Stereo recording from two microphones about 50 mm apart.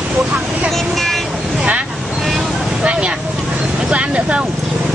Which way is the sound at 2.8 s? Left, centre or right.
Centre.